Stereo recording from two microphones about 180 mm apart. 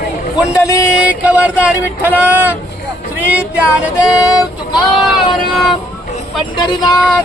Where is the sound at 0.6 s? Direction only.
20° left (ahead or behind).